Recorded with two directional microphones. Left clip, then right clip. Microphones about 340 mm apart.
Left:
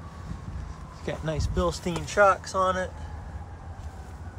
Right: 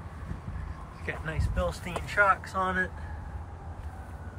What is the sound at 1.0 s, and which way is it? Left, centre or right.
Speech, centre.